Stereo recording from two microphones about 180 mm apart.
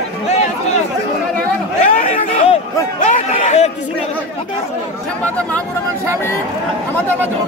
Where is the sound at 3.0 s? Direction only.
45° left (ahead or behind).